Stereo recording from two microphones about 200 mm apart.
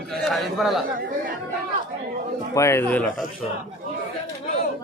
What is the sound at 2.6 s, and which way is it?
Speech, 15° left (ahead or behind).